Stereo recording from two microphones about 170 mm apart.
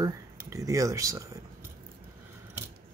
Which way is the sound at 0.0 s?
20° right (ahead or behind).